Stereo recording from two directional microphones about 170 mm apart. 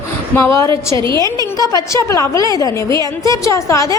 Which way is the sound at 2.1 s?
20° left (ahead or behind).